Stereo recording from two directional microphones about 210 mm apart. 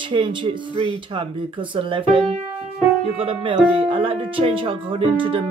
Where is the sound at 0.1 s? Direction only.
20° right (ahead or behind).